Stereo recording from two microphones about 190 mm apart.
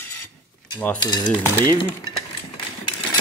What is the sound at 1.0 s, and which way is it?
Cutlery, 20° left (ahead or behind).